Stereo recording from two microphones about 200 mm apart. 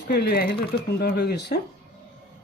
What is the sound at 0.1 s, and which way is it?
Speech, 50° left (ahead or behind).